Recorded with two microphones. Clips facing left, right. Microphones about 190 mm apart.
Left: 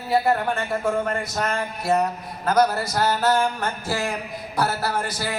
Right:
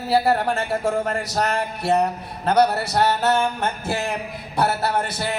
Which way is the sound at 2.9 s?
25° right (ahead or behind).